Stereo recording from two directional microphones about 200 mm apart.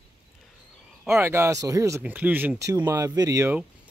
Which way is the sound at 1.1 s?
10° right (ahead or behind).